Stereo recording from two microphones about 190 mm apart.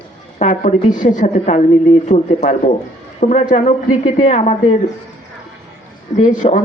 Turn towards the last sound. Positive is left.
turn(degrees=40)  # may be behind; listen again after turning